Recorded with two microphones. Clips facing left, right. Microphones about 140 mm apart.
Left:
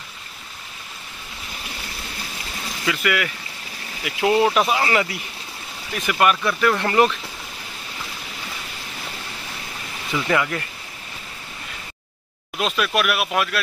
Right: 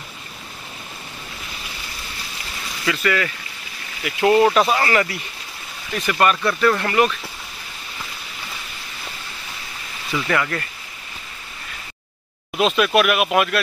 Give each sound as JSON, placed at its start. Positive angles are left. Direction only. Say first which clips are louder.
{"t": 2.9, "sound": "speech", "louder": "right 2 dB", "side_deg": 10}
{"t": 6.8, "sound": "speech", "louder": "left 1 dB", "side_deg": 25}
{"t": 10.1, "sound": "speech", "louder": "even", "side_deg": 10}
{"t": 12.5, "sound": "speech", "louder": "right 5 dB", "side_deg": -5}